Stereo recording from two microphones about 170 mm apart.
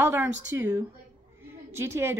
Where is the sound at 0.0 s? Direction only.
10° right (ahead or behind).